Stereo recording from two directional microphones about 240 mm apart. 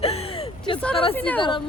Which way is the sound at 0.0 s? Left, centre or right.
Left.